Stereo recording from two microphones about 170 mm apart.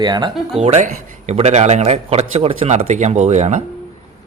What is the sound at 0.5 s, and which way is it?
Speech, 40° right (ahead or behind).